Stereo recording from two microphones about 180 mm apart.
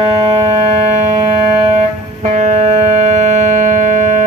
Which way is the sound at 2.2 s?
40° right (ahead or behind).